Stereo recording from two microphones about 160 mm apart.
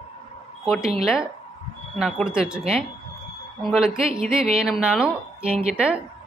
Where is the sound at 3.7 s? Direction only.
5° right (ahead or behind).